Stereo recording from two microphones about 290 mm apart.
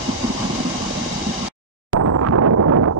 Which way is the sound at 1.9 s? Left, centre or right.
Right.